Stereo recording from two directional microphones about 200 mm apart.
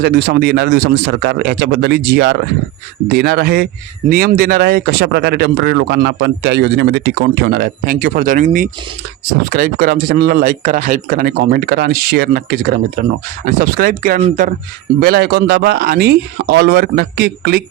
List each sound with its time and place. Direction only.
0.0 s a man's voice: 55° right (ahead or behind)